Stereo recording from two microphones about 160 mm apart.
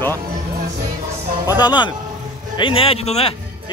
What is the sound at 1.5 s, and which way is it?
Speech, 25° left (ahead or behind).